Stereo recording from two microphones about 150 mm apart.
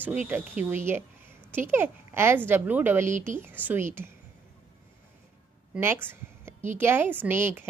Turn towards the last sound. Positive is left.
turn(degrees=-15)  # may be behind; listen again after turning